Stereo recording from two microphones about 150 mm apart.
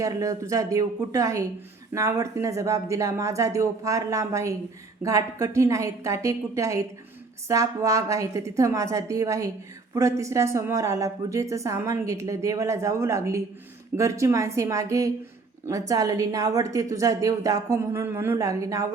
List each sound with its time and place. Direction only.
0.0 s speech: 20° right (ahead or behind)